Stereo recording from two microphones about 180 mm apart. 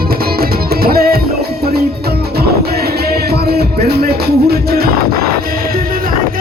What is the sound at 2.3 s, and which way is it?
Music, 60° right (ahead or behind).